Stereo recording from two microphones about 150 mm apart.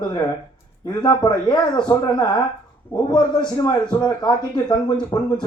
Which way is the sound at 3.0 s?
25° left (ahead or behind).